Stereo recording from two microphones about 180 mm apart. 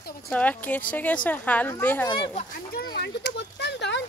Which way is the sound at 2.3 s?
55° left (ahead or behind).